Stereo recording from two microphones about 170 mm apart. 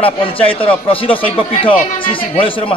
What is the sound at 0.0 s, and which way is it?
A man's voice, 35° left (ahead or behind).